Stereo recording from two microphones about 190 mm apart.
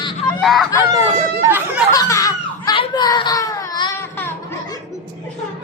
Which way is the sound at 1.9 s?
15° left (ahead or behind).